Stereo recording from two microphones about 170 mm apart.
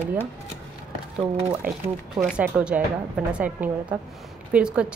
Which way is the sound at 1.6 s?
55° right (ahead or behind).